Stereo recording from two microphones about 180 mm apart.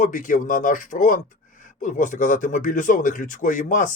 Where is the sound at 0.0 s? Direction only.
45° left (ahead or behind).